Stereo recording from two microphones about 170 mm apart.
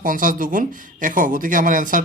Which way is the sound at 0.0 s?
50° right (ahead or behind).